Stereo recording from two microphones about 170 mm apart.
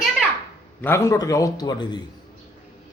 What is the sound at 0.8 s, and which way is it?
A man's voice, 15° left (ahead or behind).